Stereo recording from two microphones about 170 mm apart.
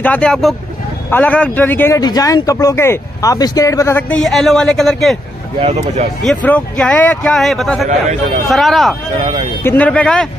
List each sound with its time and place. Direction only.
0.0 s a man's voice: 5° left (ahead or behind)
4.2 s a man's voice: centre (ahead or behind)
5.6 s speech: 35° right (ahead or behind)
6.2 s a man's voice: 10° left (ahead or behind)
9.2 s speech: 25° right (ahead or behind)
9.6 s speech: 10° left (ahead or behind)